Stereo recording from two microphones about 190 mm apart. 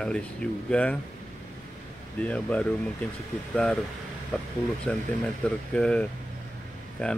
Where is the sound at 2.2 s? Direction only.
5° left (ahead or behind).